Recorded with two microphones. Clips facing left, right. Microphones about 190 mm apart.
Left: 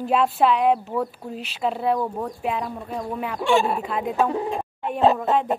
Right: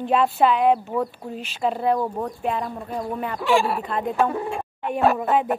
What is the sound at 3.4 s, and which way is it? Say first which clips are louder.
Speech: left 1 dB; 25° left (ahead or behind).